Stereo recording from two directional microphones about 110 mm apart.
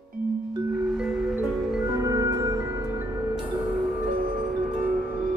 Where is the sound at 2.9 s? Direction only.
20° right (ahead or behind); by 5.3 s centre (ahead or behind).